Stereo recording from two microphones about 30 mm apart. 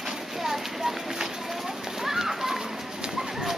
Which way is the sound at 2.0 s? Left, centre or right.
Centre.